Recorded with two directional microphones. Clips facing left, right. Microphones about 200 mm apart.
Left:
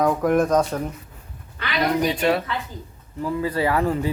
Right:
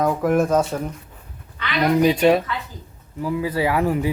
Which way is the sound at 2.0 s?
15° right (ahead or behind).